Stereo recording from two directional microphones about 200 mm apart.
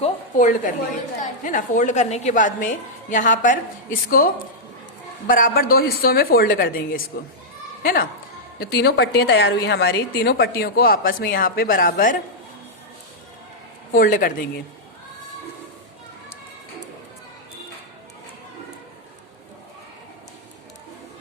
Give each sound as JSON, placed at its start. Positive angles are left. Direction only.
{"t": 0.0, "sound": "a sound", "side_deg": 40}
{"t": 1.2, "sound": "a woman's voice", "side_deg": 40}
{"t": 13.9, "sound": "a woman's voice", "side_deg": 45}